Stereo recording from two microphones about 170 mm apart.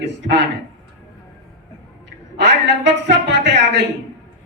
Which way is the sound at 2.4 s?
90° right.